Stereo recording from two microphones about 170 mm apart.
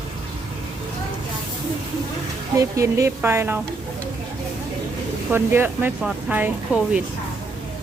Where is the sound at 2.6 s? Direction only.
20° right (ahead or behind).